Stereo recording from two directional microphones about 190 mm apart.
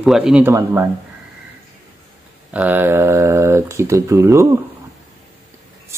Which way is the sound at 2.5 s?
10° right (ahead or behind).